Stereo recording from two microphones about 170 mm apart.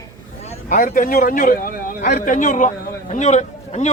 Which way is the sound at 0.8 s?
50° left (ahead or behind).